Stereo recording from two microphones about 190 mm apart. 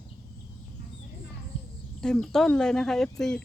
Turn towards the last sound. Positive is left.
turn(degrees=0)  # may be behind; listen again after turning